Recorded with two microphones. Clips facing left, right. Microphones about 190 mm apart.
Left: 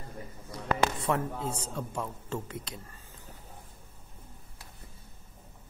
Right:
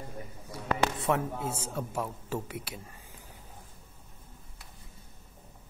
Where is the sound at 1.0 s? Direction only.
10° right (ahead or behind).